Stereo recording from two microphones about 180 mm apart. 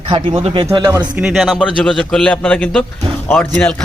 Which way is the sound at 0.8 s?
10° right (ahead or behind).